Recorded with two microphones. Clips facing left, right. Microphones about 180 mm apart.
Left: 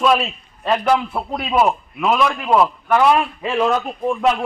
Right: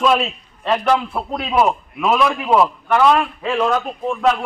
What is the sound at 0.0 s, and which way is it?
A man's voice, centre (ahead or behind).